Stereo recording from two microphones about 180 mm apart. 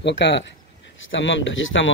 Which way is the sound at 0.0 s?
80° left.